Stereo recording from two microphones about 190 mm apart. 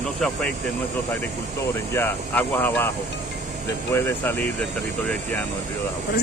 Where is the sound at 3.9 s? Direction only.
10° left (ahead or behind).